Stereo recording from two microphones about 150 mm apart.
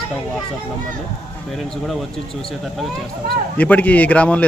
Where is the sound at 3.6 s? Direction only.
10° left (ahead or behind).